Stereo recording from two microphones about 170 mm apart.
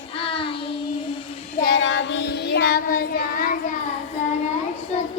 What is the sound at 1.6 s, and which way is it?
Child singing, 85° left.